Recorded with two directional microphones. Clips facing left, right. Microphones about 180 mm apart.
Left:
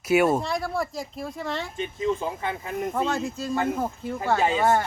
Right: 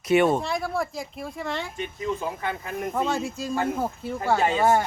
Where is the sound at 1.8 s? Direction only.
25° left (ahead or behind).